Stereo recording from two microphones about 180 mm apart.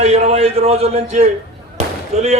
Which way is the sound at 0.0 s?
35° right (ahead or behind).